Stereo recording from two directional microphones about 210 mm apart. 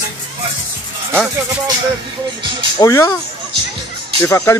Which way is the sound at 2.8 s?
15° left (ahead or behind).